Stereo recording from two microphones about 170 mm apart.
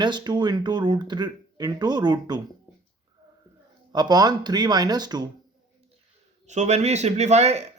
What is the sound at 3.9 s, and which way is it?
Speech, 25° right (ahead or behind).